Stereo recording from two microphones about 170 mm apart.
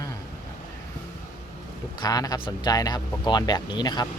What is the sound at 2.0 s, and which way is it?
Speech, 20° left (ahead or behind).